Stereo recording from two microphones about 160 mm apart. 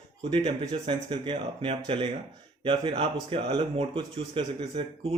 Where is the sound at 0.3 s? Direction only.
30° right (ahead or behind).